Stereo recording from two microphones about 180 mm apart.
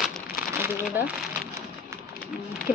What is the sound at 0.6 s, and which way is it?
Speech, 10° right (ahead or behind).